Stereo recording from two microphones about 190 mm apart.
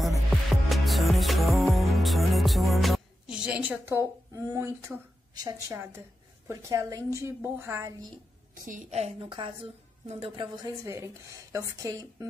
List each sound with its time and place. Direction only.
0.7 s music: centre (ahead or behind)
8.6 s a woman's voice: 40° right (ahead or behind); by 12.3 s 20° right (ahead or behind)